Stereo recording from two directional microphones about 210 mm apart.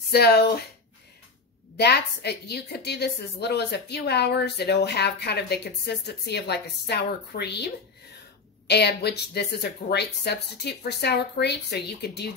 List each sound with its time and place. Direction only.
0.1 s a woman's voice: 50° left (ahead or behind)
1.8 s a woman's voice: 50° left (ahead or behind)